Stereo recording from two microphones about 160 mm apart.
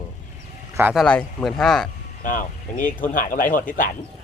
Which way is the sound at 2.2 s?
55° left (ahead or behind).